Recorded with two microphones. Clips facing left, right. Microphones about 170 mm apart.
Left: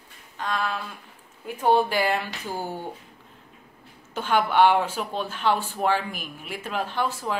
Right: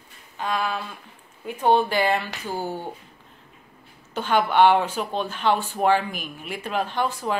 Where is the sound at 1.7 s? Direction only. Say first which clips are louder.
Right 1 dB; 5° left (ahead or behind).